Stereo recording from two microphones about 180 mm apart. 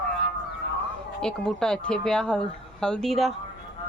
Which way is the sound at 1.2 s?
5° left (ahead or behind).